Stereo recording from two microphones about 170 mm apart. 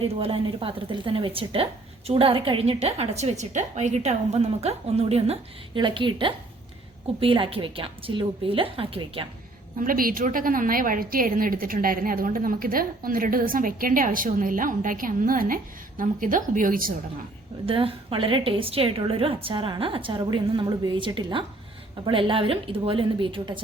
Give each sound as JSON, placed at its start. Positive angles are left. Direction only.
{"t": 0.0, "sound": "a woman's voice", "side_deg": -35}
{"t": 9.7, "sound": "a woman's voice", "side_deg": -55}
{"t": 17.7, "sound": "a woman's voice", "side_deg": -30}